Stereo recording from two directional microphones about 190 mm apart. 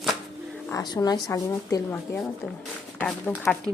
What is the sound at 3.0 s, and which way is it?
Speech, 10° left (ahead or behind).